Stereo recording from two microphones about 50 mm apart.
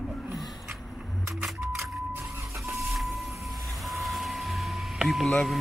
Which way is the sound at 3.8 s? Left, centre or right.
Centre.